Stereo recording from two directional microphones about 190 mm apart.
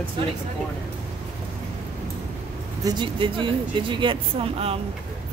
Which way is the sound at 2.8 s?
25° right (ahead or behind).